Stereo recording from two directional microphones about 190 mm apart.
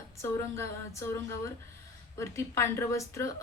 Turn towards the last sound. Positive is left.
turn(degrees=15)  # may be behind; listen again after turning